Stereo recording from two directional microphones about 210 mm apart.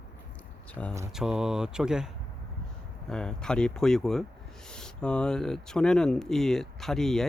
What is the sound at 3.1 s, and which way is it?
Speech, 5° left (ahead or behind).